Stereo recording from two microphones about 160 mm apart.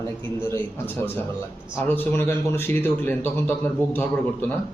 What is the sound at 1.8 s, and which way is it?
A man's voice, 15° left (ahead or behind).